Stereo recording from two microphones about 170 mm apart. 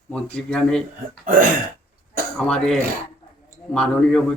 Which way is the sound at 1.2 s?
55° right (ahead or behind).